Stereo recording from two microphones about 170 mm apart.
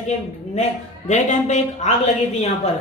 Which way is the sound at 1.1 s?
45° left (ahead or behind).